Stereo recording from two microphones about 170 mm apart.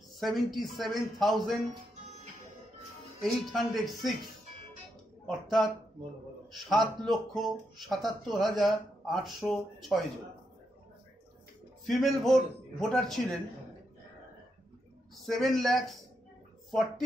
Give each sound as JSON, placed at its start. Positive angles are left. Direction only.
{"t": 0.2, "sound": "speech", "side_deg": 0}
{"t": 3.2, "sound": "speech", "side_deg": 0}
{"t": 5.2, "sound": "speech", "side_deg": 0}
{"t": 11.9, "sound": "speech", "side_deg": 0}
{"t": 15.2, "sound": "speech", "side_deg": 0}